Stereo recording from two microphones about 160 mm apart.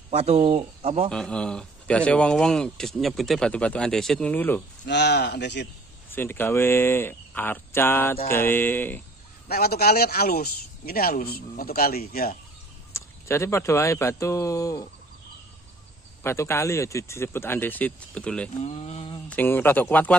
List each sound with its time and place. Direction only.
0.1 s speech: 40° right (ahead or behind)
1.1 s speech: 5° left (ahead or behind)
4.8 s speech: 90° left
6.0 s speech: 15° left (ahead or behind)
9.5 s speech: 75° left (ahead or behind)
12.9 s speech: 15° left (ahead or behind)
16.2 s speech: 15° left (ahead or behind)
18.6 s a sound: 40° left (ahead or behind)
19.2 s speech: 10° left (ahead or behind)